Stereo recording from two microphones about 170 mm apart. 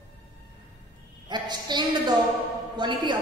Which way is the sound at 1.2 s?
25° right (ahead or behind).